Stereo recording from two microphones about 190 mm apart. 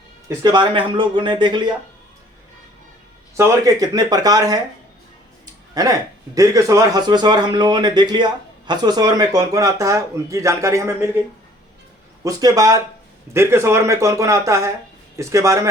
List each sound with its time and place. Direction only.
0.3 s a man's voice: 25° right (ahead or behind)
3.3 s a man's voice: 15° right (ahead or behind)
6.3 s a man's voice: 15° right (ahead or behind)
12.2 s a man's voice: 20° right (ahead or behind)